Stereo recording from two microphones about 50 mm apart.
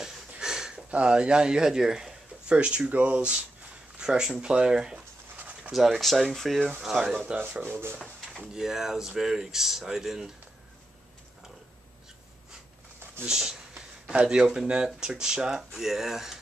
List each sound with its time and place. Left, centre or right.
0.4 s sniff: centre
0.8 s speech: right
2.4 s speech: right
5.7 s speech: centre
6.8 s speech: centre
7.6 s speech: right
8.4 s speech: centre
13.3 s a sound: centre
14.2 s speech: centre